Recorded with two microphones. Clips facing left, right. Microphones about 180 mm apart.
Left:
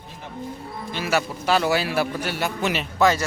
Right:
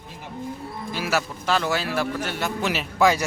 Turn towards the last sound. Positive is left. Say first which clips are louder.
# even
turn(degrees=-10)  # may be behind; listen again after turning